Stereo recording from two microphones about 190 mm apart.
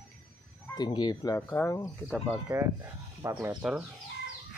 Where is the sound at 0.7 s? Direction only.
25° left (ahead or behind).